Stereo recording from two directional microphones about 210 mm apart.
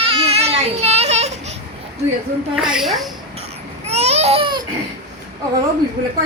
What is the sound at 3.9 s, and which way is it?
Crying, 30° right (ahead or behind).